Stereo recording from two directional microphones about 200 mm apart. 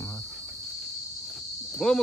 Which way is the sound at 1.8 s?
5° left (ahead or behind).